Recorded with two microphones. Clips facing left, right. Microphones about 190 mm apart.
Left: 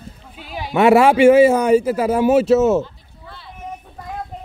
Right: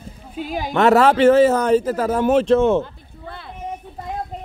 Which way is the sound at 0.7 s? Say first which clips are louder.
Left 2 dB; 10° left (ahead or behind).